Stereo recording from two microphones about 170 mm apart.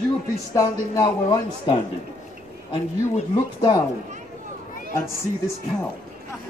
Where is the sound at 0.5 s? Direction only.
25° left (ahead or behind).